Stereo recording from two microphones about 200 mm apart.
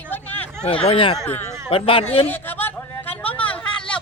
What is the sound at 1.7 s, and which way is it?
Speech, 25° left (ahead or behind).